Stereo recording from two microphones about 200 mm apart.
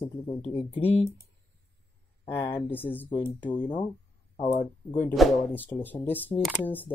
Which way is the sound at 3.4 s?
25° left (ahead or behind).